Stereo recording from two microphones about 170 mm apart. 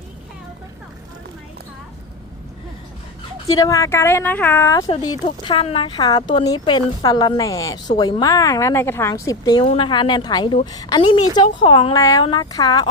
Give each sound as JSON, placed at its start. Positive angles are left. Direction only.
{"t": 3.4, "sound": "speech", "side_deg": 20}
{"t": 5.0, "sound": "speech", "side_deg": 30}